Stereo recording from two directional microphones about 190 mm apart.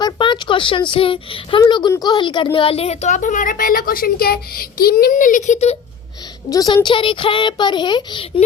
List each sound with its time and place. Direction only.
0.0 s speech: 25° left (ahead or behind)
6.5 s a woman's voice: 20° left (ahead or behind)